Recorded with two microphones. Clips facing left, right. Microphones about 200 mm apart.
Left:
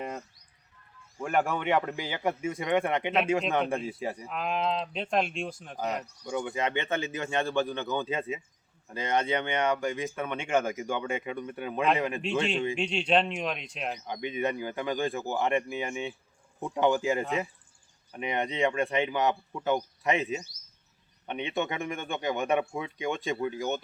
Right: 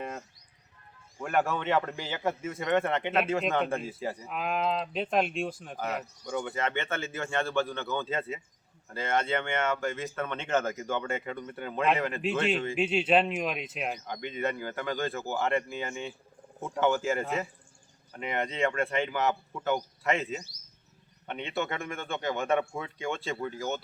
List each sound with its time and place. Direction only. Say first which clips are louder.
1.2 s speech: left 1 dB; 15° left (ahead or behind)
4.3 s speech: even; 5° right (ahead or behind)
6.2 s speech: left 1 dB; 15° left (ahead or behind)
12.2 s speech: even; 5° right (ahead or behind)
14.1 s speech: left 5 dB; 15° left (ahead or behind)